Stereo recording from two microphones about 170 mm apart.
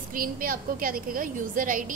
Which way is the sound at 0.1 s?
55° right (ahead or behind).